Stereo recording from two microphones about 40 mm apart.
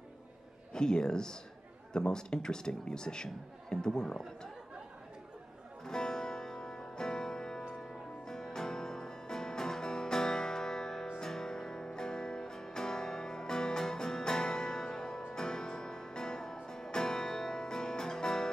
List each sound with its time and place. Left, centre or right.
0.7 s speech: centre
5.9 s music: centre